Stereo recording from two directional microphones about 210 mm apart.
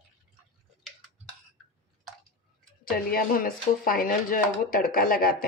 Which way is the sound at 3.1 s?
45° left (ahead or behind).